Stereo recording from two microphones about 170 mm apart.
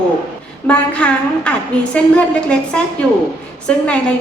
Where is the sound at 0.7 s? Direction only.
5° left (ahead or behind).